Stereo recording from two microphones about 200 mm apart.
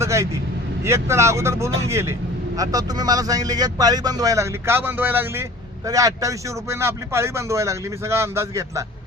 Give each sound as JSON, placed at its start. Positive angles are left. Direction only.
{"t": 0.0, "sound": "speech", "side_deg": -15}